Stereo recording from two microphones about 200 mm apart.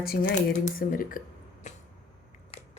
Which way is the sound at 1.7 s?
35° left (ahead or behind).